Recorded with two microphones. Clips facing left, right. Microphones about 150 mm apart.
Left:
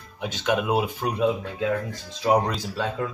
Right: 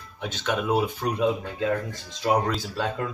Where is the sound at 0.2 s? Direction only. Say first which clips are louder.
Left 3 dB; 10° left (ahead or behind).